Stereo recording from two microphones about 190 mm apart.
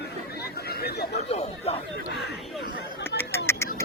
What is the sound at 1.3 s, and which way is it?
Speech, 35° left (ahead or behind).